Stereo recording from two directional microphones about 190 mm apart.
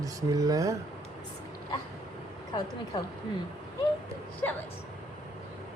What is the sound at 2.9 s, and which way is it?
Speech, 20° left (ahead or behind).